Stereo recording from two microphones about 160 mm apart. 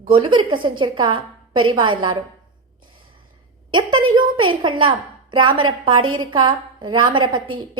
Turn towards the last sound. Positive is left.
turn(degrees=-30)  # may be behind; listen again after turning